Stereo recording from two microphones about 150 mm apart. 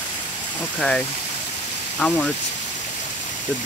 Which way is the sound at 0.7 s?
5° left (ahead or behind).